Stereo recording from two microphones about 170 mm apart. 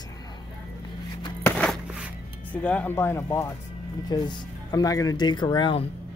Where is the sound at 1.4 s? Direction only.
5° left (ahead or behind).